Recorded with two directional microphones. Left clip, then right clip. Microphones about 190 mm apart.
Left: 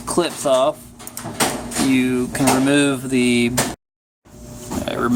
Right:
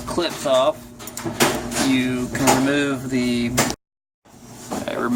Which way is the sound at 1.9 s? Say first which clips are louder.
Left 3 dB; 40° left (ahead or behind).